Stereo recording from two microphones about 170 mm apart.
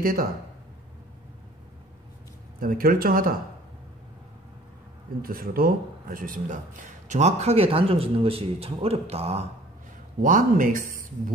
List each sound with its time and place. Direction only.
0.0 s speech: 60° right (ahead or behind)
2.6 s speech: 55° right (ahead or behind)
5.2 s speech: 60° right (ahead or behind); by 9.5 s 35° right (ahead or behind)
10.2 s speech: 50° right (ahead or behind)